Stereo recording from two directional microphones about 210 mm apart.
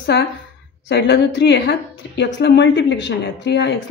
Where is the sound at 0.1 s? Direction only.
55° left (ahead or behind).